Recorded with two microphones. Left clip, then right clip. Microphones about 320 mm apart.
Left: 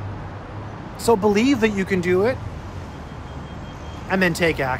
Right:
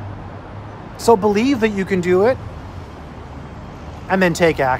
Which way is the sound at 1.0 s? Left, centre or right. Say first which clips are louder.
Right 4 dB; centre.